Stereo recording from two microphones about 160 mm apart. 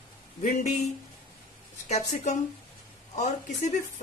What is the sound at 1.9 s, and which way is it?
A woman's voice, 45° left (ahead or behind).